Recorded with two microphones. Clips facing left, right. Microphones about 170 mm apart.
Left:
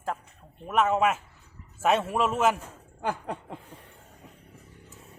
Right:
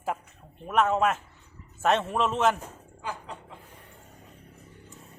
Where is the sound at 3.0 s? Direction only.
55° left (ahead or behind).